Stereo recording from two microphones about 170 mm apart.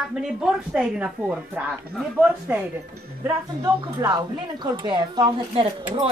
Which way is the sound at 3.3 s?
20° right (ahead or behind).